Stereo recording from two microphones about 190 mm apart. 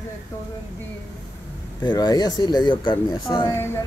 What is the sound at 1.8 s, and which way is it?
Speech, 20° left (ahead or behind).